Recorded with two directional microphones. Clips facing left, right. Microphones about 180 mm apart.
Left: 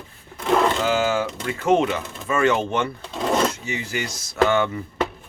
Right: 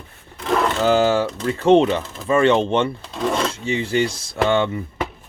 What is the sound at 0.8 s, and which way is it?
Speech, 35° right (ahead or behind).